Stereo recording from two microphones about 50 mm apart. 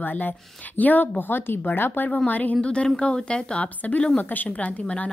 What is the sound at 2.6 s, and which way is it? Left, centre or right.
Speech, left.